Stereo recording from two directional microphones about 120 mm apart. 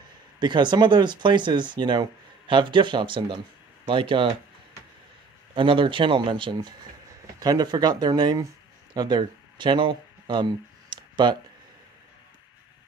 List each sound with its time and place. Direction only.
0.4 s speech: 40° right (ahead or behind)
5.5 s speech: 45° right (ahead or behind)
9.2 s a sound: 40° right (ahead or behind)